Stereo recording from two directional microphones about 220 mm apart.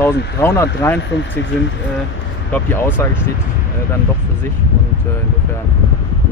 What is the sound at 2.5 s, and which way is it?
Speech, 10° left (ahead or behind).